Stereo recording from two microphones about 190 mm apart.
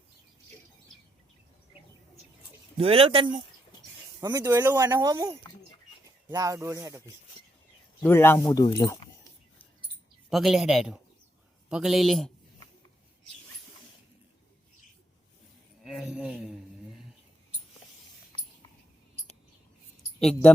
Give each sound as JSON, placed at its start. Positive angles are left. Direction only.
{"t": 2.7, "sound": "speech", "side_deg": -30}
{"t": 8.0, "sound": "speech", "side_deg": 10}
{"t": 10.2, "sound": "a man's voice", "side_deg": 0}
{"t": 15.8, "sound": "a sound", "side_deg": -5}
{"t": 20.1, "sound": "speech", "side_deg": 5}